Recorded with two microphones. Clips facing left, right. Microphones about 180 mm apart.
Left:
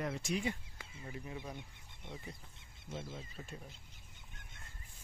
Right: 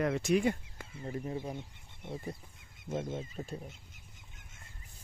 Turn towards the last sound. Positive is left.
turn(degrees=-35)  # may be behind; listen again after turning